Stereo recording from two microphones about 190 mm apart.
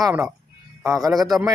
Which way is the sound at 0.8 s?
15° right (ahead or behind).